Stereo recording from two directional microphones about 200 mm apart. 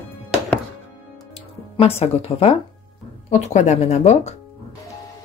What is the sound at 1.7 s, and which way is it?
Speech, 30° left (ahead or behind).